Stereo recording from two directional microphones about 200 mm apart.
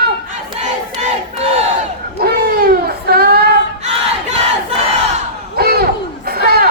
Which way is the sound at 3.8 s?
35° right (ahead or behind).